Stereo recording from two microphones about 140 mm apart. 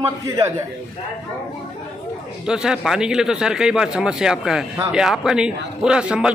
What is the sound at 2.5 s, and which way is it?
Speech, 5° right (ahead or behind).